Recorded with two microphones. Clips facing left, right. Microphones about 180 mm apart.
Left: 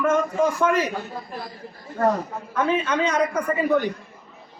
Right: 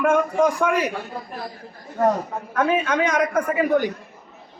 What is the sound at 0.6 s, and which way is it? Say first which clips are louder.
Speech: even; 15° right (ahead or behind).